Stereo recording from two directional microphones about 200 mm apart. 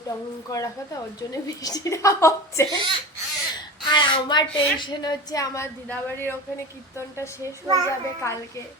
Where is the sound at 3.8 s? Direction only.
25° left (ahead or behind).